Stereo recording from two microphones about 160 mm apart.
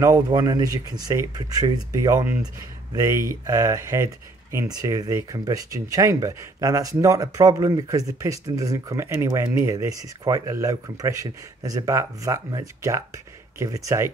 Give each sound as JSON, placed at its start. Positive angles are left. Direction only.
{"t": 0.0, "sound": "speech", "side_deg": -20}